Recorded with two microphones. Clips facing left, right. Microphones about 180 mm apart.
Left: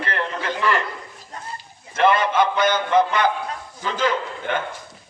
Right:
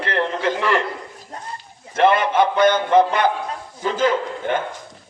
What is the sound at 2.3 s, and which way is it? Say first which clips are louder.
A man's voice: right 3 dB; 55° right (ahead or behind).